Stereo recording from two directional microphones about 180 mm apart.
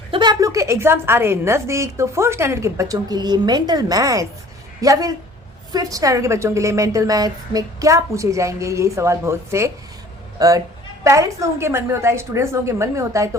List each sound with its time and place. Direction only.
0.1 s a woman's voice: 25° right (ahead or behind)